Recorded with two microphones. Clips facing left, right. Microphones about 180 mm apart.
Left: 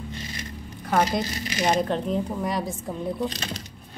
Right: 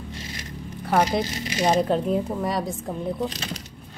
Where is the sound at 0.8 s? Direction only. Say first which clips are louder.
Right 2 dB; 5° right (ahead or behind).